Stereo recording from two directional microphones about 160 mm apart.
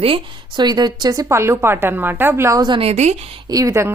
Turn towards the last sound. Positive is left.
turn(degrees=-15)  # may be behind; listen again after turning